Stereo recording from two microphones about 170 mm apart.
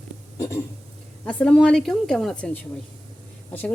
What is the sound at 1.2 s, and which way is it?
Speech, 5° left (ahead or behind).